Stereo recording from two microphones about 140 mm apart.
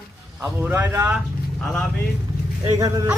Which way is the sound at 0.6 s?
15° right (ahead or behind).